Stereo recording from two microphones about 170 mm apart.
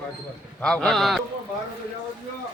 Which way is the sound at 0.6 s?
5° left (ahead or behind).